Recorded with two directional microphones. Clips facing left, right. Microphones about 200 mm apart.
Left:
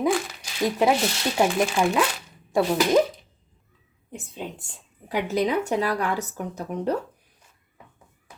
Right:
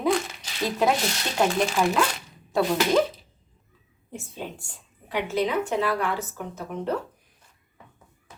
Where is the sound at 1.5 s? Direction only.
Centre (ahead or behind).